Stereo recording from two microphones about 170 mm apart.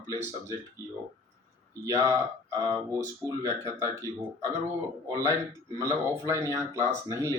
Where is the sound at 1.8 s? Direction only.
20° right (ahead or behind).